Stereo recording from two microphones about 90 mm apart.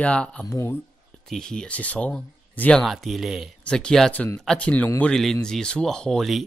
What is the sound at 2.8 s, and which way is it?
Speech, centre (ahead or behind).